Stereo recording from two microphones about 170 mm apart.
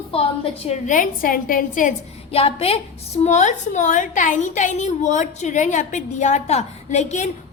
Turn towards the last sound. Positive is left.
turn(degrees=45)  # may be behind; listen again after turning